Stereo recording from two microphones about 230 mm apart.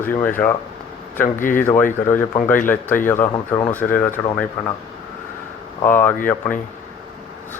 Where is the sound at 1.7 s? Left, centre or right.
Centre.